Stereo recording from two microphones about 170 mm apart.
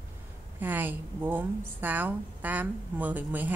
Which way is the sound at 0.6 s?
10° right (ahead or behind).